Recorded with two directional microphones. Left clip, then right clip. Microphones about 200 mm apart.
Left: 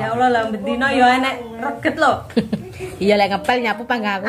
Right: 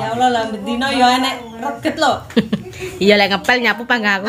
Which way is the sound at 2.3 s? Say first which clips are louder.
Right 3 dB; 20° right (ahead or behind).